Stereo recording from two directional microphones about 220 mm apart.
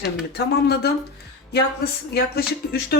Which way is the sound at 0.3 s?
45° left (ahead or behind).